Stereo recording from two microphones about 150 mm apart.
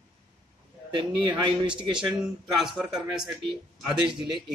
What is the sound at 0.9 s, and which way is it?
A man's voice, 30° right (ahead or behind).